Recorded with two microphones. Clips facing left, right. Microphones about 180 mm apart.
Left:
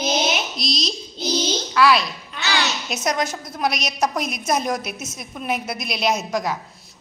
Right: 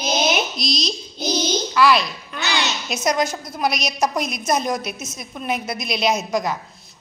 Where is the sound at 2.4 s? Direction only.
20° right (ahead or behind).